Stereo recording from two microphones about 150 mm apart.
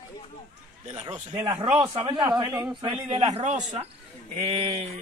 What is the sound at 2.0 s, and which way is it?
Speech, 25° right (ahead or behind).